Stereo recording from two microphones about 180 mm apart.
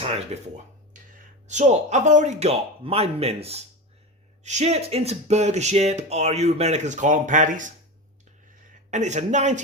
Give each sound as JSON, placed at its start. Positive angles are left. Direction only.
{"t": 0.3, "sound": "speech", "side_deg": -35}
{"t": 0.9, "sound": "a sound", "side_deg": -45}
{"t": 1.5, "sound": "speech", "side_deg": -40}
{"t": 8.7, "sound": "speech", "side_deg": -40}